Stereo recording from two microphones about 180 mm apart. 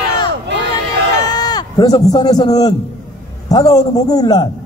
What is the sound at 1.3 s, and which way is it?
A man's voice, 25° left (ahead or behind).